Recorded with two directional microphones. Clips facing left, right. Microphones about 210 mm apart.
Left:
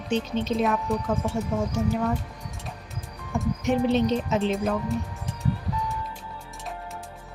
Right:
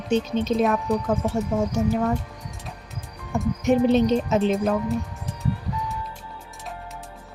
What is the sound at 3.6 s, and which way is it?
Speech, 45° right (ahead or behind).